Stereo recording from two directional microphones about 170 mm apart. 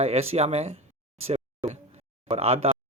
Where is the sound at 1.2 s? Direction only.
40° right (ahead or behind).